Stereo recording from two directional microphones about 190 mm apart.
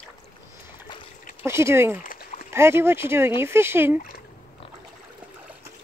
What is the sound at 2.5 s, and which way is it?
Speech, 15° right (ahead or behind).